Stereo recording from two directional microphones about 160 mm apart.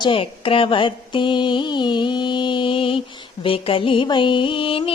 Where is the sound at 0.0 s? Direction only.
35° left (ahead or behind).